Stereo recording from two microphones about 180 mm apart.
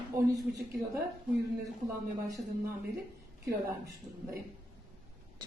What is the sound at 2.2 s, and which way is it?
Speech, 20° right (ahead or behind).